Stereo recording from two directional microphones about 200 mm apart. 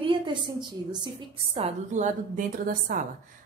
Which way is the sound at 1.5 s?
35° right (ahead or behind).